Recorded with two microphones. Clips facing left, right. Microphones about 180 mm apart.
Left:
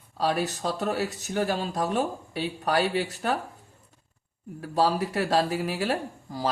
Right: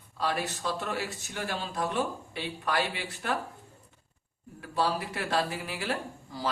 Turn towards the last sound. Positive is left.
turn(degrees=40)  # may be behind; listen again after turning